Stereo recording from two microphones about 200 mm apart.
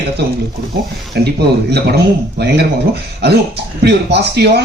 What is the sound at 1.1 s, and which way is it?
Speech, 55° right (ahead or behind).